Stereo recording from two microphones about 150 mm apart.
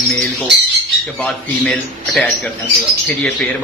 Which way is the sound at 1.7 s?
Centre (ahead or behind).